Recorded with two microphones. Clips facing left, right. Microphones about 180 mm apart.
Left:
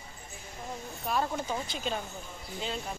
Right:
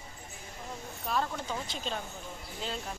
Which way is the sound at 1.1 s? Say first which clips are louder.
Left 2 dB; 5° left (ahead or behind).